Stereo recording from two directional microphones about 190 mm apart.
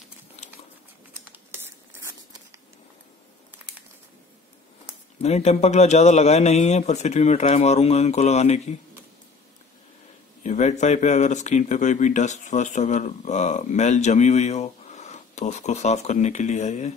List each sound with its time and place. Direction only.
1.3 s a sound: 15° right (ahead or behind)
5.2 s speech: 35° left (ahead or behind)
10.4 s speech: 40° left (ahead or behind)